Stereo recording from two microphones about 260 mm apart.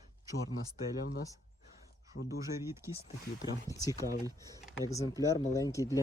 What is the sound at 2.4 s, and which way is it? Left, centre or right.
Speech, centre.